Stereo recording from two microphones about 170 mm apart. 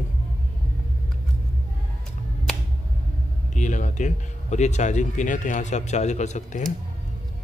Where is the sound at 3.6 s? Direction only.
45° left (ahead or behind).